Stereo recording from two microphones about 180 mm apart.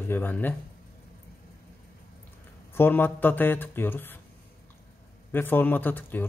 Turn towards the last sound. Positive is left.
turn(degrees=10)  # may be behind; listen again after turning